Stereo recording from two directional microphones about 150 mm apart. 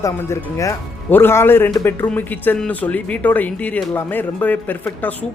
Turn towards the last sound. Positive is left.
turn(degrees=10)  # may be behind; listen again after turning